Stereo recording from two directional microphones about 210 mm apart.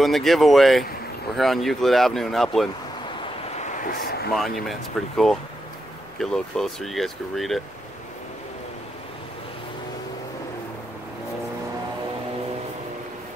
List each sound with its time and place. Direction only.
0.0 s speech: centre (ahead or behind)
3.5 s a sound: 35° left (ahead or behind)
4.4 s speech: centre (ahead or behind)